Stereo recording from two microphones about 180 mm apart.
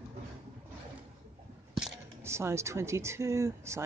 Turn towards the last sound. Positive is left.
turn(degrees=-15)  # may be behind; listen again after turning